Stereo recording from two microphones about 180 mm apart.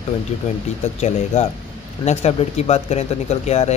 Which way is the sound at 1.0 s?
40° left (ahead or behind).